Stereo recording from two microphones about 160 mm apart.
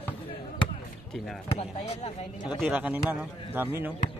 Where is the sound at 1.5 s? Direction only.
40° left (ahead or behind).